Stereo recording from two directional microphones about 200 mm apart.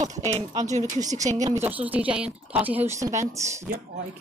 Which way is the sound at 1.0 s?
15° right (ahead or behind).